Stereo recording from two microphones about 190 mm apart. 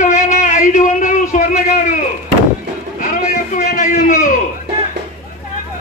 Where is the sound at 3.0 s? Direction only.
45° left (ahead or behind).